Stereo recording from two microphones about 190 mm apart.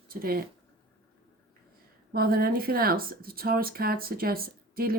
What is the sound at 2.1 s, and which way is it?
Speech, 55° right (ahead or behind).